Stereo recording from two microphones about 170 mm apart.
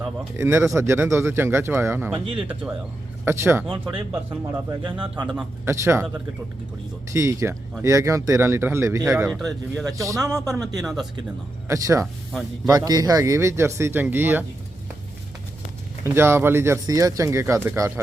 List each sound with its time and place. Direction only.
0.3 s speech: 15° right (ahead or behind)
2.1 s speech: 30° right (ahead or behind)
3.2 s speech: 15° right (ahead or behind)
4.7 s speech: 30° right (ahead or behind)
5.6 s speech: 15° right (ahead or behind)
9.2 s speech: centre (ahead or behind)
9.8 s speech: 20° right (ahead or behind)
10.8 s speech: centre (ahead or behind)
11.7 s speech: 20° right (ahead or behind)
16.0 s speech: 15° right (ahead or behind)